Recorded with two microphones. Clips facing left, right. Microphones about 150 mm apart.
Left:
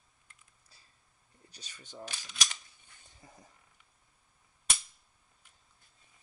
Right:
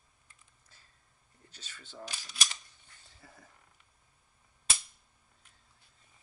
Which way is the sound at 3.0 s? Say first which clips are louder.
Left 1 dB; 20° left (ahead or behind).